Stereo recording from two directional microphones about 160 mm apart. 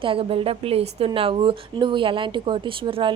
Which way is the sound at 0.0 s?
35° right (ahead or behind).